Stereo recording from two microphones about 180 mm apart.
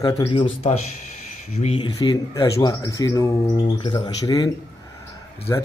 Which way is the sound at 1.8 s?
25° left (ahead or behind).